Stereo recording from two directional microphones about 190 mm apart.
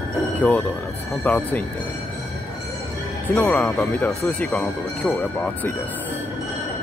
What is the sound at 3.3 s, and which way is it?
Speech, 5° left (ahead or behind).